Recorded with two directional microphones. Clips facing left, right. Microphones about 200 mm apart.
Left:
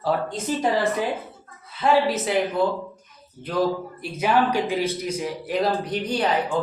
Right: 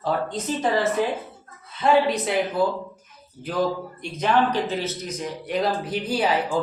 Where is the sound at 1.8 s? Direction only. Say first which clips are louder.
Right 1 dB; 5° left (ahead or behind).